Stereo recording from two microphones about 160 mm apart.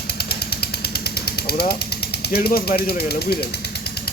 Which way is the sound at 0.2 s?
80° left.